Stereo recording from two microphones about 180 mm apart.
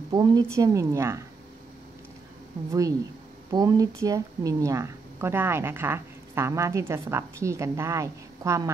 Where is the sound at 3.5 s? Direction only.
20° right (ahead or behind).